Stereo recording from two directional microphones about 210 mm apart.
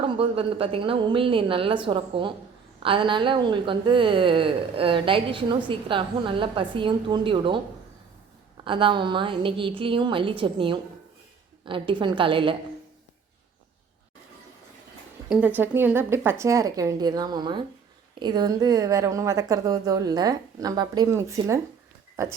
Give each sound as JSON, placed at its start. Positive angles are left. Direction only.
{"t": 0.0, "sound": "a woman's voice", "side_deg": -25}
{"t": 8.6, "sound": "a woman's voice", "side_deg": -25}
{"t": 15.3, "sound": "a woman's voice", "side_deg": -5}